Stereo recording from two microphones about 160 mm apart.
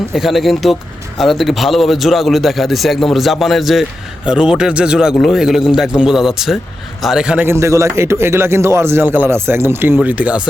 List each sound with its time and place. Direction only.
0.1 s a man's voice: centre (ahead or behind)